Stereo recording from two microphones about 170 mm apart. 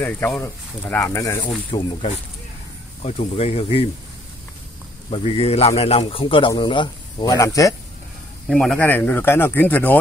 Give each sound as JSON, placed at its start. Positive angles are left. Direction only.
{"t": 0.0, "sound": "speech", "side_deg": 10}
{"t": 1.7, "sound": "a man's voice", "side_deg": 35}
{"t": 5.1, "sound": "a man's voice", "side_deg": 35}
{"t": 8.5, "sound": "speech", "side_deg": 5}